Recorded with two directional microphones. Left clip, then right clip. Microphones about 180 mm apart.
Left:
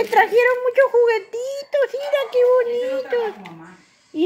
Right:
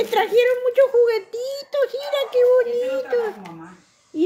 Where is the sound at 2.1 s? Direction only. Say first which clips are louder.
Even; 10° right (ahead or behind).